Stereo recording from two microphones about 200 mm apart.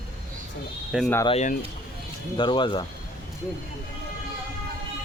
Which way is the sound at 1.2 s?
30° left (ahead or behind).